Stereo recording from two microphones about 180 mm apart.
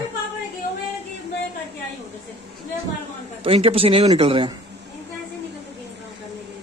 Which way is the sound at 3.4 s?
30° right (ahead or behind).